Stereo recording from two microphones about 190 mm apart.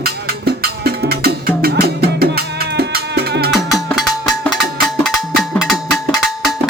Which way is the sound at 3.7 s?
Centre (ahead or behind).